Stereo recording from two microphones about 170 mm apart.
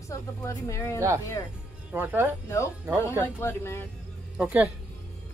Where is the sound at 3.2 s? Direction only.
15° left (ahead or behind).